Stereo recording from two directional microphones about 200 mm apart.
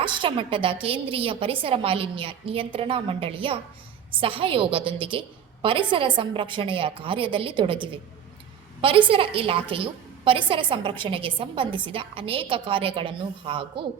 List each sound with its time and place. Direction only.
0.0 s a woman's voice: 25° right (ahead or behind)
9.0 s a woman's voice: 25° right (ahead or behind)